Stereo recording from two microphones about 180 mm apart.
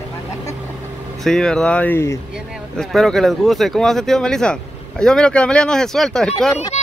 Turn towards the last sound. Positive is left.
turn(degrees=40)  # may be behind; listen again after turning